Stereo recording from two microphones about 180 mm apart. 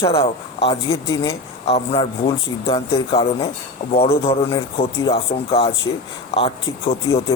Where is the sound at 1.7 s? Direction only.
35° left (ahead or behind).